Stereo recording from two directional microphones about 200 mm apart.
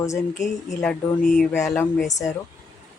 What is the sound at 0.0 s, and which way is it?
Speech, 15° left (ahead or behind).